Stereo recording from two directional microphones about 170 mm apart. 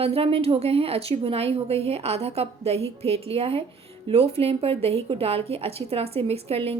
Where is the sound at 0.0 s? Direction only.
35° right (ahead or behind).